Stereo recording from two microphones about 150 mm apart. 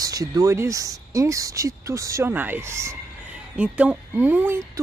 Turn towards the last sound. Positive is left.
turn(degrees=-15)  # may be behind; listen again after turning